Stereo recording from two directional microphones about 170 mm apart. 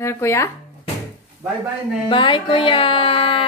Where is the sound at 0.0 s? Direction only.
15° left (ahead or behind).